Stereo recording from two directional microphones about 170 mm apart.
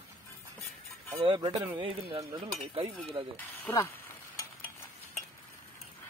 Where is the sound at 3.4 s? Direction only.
15° left (ahead or behind).